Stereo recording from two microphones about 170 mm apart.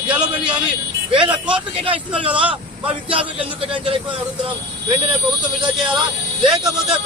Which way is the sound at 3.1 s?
30° right (ahead or behind).